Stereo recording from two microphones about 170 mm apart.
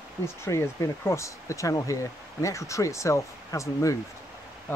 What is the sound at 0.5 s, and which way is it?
Speech, 15° left (ahead or behind).